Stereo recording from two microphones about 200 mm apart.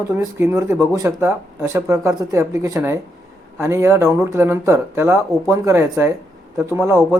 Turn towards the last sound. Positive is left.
turn(degrees=-15)  # may be behind; listen again after turning